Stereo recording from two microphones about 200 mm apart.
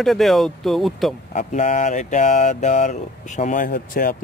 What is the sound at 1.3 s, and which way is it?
Speech, 40° left (ahead or behind).